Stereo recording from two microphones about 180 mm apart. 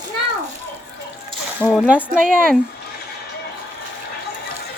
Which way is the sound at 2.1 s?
45° right (ahead or behind).